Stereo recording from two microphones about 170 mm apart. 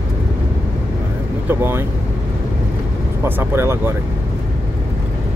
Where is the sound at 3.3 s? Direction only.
15° right (ahead or behind).